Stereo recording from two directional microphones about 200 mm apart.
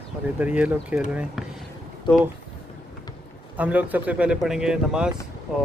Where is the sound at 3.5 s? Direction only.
10° right (ahead or behind).